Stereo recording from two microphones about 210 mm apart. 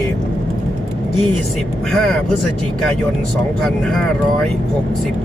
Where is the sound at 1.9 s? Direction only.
Centre (ahead or behind).